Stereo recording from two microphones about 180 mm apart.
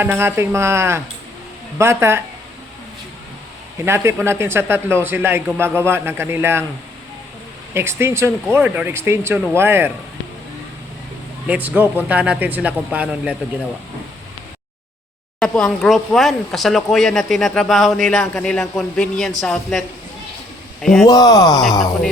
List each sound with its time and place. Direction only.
0.0 s speech: 15° right (ahead or behind)
3.8 s speech: 15° right (ahead or behind)
7.7 s speech: 15° right (ahead or behind)
11.4 s speech: 10° right (ahead or behind)
15.4 s speech: centre (ahead or behind)
20.8 s speech: centre (ahead or behind)
21.1 s speech: 20° left (ahead or behind)